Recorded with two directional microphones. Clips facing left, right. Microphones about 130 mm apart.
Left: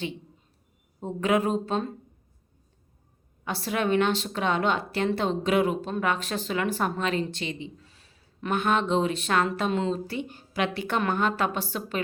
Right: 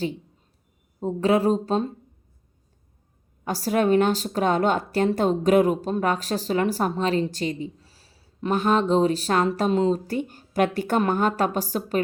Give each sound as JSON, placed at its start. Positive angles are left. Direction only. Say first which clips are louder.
{"t": 1.0, "sound": "a woman's voice", "louder": "right 4 dB", "side_deg": -35}
{"t": 3.4, "sound": "a woman's voice", "louder": "right 6 dB", "side_deg": -40}